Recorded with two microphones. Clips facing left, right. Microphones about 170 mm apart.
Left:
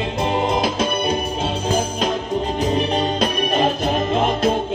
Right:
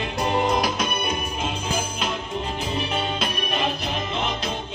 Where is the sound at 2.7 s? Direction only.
40° left (ahead or behind).